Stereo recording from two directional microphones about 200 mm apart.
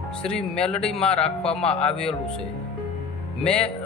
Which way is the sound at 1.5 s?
30° left (ahead or behind).